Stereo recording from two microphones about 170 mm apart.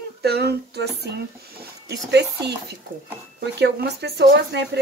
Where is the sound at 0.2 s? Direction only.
70° right (ahead or behind).